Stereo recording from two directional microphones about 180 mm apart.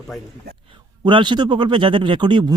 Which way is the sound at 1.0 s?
25° right (ahead or behind).